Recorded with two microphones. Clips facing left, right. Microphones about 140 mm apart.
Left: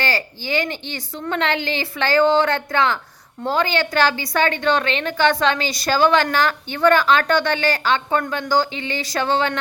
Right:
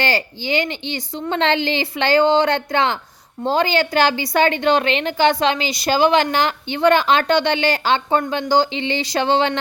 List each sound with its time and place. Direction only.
0.0 s a woman's voice: 25° right (ahead or behind)